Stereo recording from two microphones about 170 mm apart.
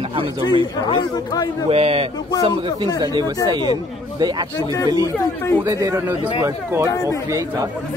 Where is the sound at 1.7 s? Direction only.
35° right (ahead or behind).